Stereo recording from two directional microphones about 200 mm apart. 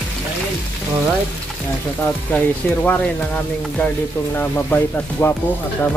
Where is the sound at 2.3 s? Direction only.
10° left (ahead or behind).